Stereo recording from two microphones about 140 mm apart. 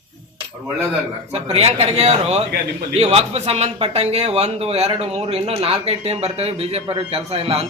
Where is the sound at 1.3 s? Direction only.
50° right (ahead or behind).